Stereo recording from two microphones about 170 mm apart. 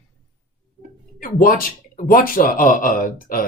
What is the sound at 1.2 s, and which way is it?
Speech, 55° left (ahead or behind).